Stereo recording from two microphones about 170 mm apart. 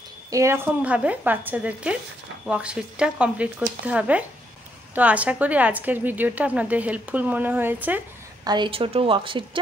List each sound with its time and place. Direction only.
0.3 s a woman's voice: 15° right (ahead or behind)
8.5 s speech: 30° right (ahead or behind)